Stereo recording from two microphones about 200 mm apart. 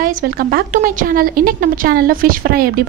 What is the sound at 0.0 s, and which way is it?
A woman's voice, 45° right (ahead or behind).